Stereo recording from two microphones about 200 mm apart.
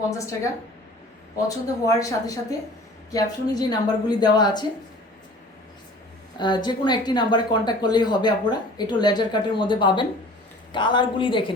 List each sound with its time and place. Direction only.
1.5 s speech: 15° left (ahead or behind)
6.4 s speech: 20° left (ahead or behind)